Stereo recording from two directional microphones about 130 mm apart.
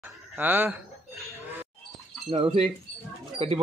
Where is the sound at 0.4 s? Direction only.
15° right (ahead or behind).